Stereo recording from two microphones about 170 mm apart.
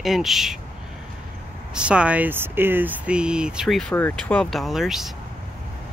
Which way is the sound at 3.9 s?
10° left (ahead or behind).